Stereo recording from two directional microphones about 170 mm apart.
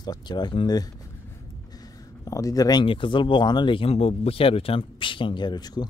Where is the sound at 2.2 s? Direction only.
20° left (ahead or behind).